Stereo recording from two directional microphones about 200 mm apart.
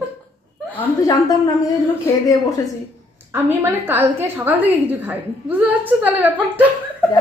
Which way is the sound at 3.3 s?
10° right (ahead or behind).